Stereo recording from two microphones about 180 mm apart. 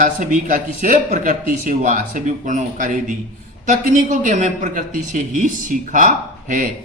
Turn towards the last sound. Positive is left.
turn(degrees=-45)  # may be behind; listen again after turning